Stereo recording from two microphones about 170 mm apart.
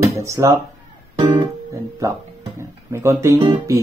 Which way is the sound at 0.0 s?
15° right (ahead or behind).